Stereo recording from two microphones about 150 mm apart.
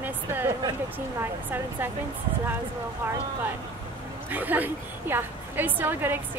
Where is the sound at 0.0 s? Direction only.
15° right (ahead or behind).